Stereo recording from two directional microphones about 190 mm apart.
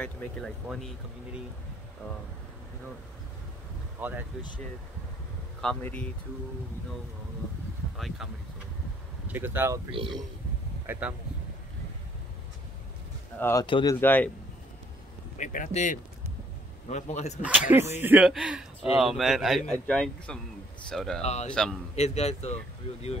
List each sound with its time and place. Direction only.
0.0 s speech: centre (ahead or behind)
4.0 s speech: 10° right (ahead or behind)
5.6 s speech: 5° left (ahead or behind)
9.3 s speech: 10° right (ahead or behind)
9.8 s speech: 25° right (ahead or behind)
10.9 s speech: 5° right (ahead or behind)
13.4 s speech: 15° left (ahead or behind)
13.7 s speech: 25° left (ahead or behind)
13.9 s speech: 10° left (ahead or behind)
15.3 s speech: 40° left (ahead or behind)
17.4 s speech: 10° right (ahead or behind)
21.2 s speech: 35° left (ahead or behind)